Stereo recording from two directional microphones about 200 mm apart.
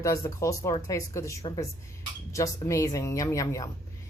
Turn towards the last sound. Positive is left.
turn(degrees=15)  # may be behind; listen again after turning